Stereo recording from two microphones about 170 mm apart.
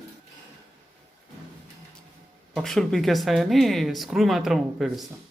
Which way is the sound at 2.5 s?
Centre (ahead or behind).